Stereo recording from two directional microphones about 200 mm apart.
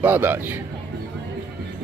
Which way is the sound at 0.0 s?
10° right (ahead or behind).